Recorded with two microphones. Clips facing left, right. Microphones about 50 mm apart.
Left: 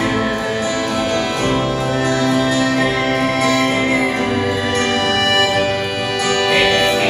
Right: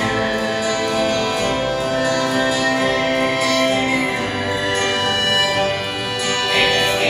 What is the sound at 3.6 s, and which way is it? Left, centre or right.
Music, left.